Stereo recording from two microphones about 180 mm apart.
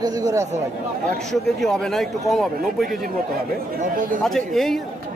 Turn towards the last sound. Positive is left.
turn(degrees=0)  # may be behind; listen again after turning